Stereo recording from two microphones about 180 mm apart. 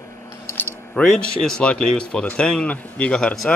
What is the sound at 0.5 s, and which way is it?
Speech, 5° left (ahead or behind).